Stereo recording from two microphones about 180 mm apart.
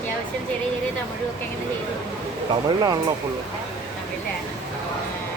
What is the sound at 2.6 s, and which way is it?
Speech, 20° right (ahead or behind).